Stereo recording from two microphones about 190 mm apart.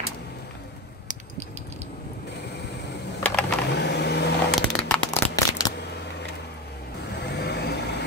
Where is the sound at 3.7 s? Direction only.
60° left (ahead or behind).